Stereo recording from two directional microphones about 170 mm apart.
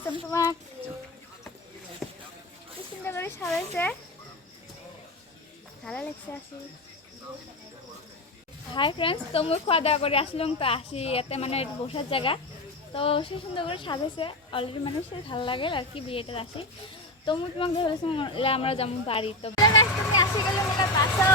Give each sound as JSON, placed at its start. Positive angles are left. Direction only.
{"t": 0.3, "sound": "speech", "side_deg": 15}
{"t": 2.0, "sound": "boat", "side_deg": 0}
{"t": 3.0, "sound": "speech", "side_deg": 15}
{"t": 5.8, "sound": "speech", "side_deg": 5}
{"t": 8.7, "sound": "a woman's voice", "side_deg": 30}
{"t": 19.6, "sound": "vehicle", "side_deg": 20}